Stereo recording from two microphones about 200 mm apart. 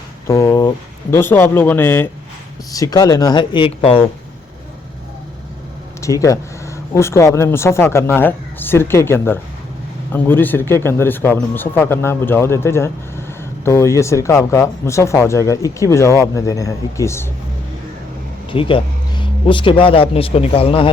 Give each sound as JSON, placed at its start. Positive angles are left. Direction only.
{"t": 0.3, "sound": "speech", "side_deg": 15}
{"t": 6.0, "sound": "speech", "side_deg": 15}
{"t": 18.5, "sound": "speech", "side_deg": 25}